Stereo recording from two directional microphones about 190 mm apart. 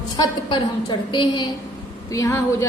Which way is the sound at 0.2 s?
25° left (ahead or behind).